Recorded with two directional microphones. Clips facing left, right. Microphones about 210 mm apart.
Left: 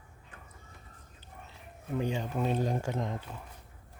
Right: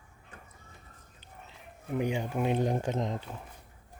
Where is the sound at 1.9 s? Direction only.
15° right (ahead or behind).